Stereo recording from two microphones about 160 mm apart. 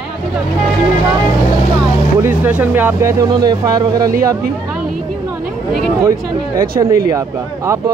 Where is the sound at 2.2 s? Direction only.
10° right (ahead or behind).